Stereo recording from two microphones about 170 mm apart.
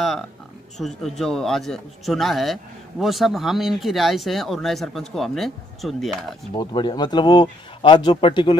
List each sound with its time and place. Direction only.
0.7 s a man's voice: centre (ahead or behind)
6.5 s speech: 25° left (ahead or behind)